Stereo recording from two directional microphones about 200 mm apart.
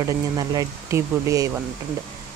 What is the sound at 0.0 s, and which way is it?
Speech, 15° right (ahead or behind).